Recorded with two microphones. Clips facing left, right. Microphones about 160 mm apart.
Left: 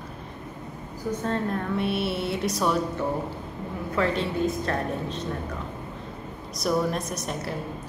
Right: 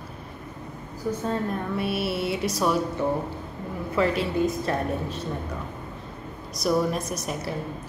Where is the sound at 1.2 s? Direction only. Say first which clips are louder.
Left 2 dB; 5° right (ahead or behind).